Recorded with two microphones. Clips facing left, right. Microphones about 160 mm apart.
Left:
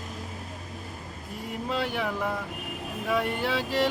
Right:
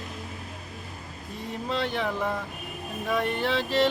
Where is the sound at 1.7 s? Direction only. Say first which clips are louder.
Right 1 dB; 10° left (ahead or behind).